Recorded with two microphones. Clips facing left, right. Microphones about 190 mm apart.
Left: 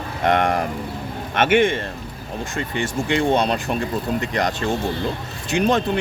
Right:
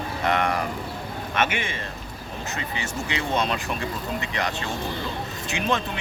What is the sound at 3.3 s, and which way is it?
Speech, 40° left (ahead or behind).